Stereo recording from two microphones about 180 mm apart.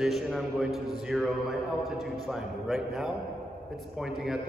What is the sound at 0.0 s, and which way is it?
A man's voice, centre (ahead or behind).